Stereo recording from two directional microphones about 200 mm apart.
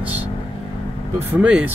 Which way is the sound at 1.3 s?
5° right (ahead or behind).